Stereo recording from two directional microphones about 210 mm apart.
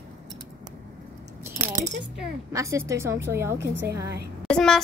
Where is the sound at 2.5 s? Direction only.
15° right (ahead or behind).